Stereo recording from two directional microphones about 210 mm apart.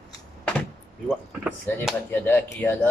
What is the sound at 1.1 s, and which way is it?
Speech, centre (ahead or behind).